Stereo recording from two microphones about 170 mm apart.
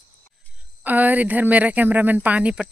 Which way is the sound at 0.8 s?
10° right (ahead or behind).